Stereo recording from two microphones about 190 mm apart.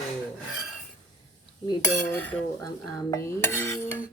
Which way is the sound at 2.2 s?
5° left (ahead or behind).